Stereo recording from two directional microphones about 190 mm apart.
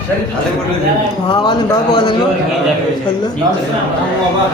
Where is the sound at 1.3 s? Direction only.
25° left (ahead or behind).